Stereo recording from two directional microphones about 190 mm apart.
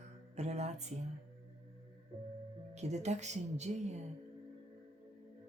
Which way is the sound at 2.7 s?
35° right (ahead or behind).